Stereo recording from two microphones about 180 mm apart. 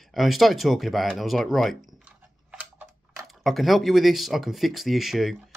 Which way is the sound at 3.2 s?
Centre (ahead or behind).